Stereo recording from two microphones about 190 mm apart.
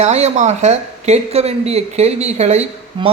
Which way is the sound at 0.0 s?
35° right (ahead or behind).